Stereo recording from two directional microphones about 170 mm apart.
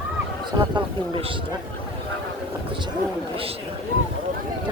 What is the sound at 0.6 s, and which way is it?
Speech, 30° right (ahead or behind).